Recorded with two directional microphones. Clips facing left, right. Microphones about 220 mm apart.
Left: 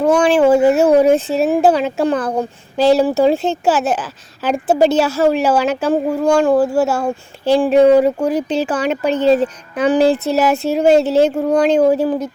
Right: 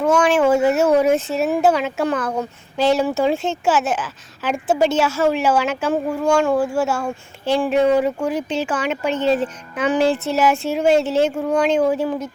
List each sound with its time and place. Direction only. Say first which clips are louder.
0.0 s speech: left 4 dB; 35° left (ahead or behind)